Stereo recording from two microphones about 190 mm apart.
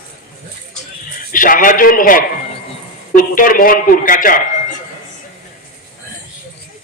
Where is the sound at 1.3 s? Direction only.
45° left (ahead or behind).